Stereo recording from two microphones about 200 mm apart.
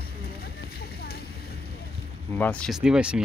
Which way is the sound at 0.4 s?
50° left (ahead or behind).